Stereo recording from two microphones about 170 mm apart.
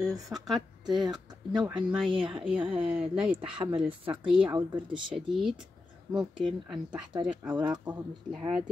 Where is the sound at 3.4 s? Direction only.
30° right (ahead or behind).